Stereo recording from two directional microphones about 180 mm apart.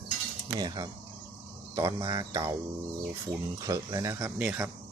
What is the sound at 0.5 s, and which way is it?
Speech, 25° right (ahead or behind).